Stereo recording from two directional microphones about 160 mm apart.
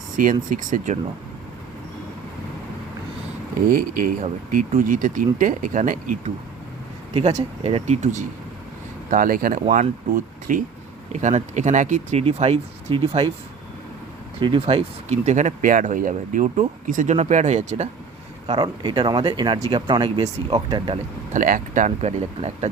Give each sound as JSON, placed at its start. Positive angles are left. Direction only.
{"t": 0.2, "sound": "speech", "side_deg": -60}
{"t": 3.7, "sound": "speech", "side_deg": -60}
{"t": 7.3, "sound": "speech", "side_deg": -40}
{"t": 14.3, "sound": "speech", "side_deg": -35}
{"t": 18.4, "sound": "speech", "side_deg": -25}
{"t": 21.3, "sound": "speech", "side_deg": -55}